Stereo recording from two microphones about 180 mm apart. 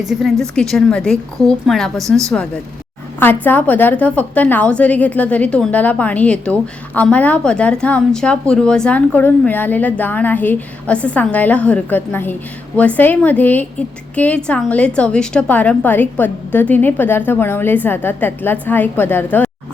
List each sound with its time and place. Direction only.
0.0 s a woman's voice: centre (ahead or behind)